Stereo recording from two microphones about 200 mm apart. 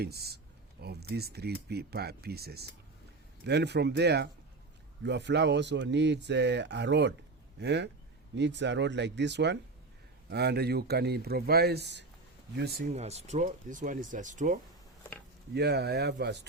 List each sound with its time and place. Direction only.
0.0 s speech: 50° right (ahead or behind)
12.9 s speech: 35° right (ahead or behind)
15.5 s speech: 55° right (ahead or behind)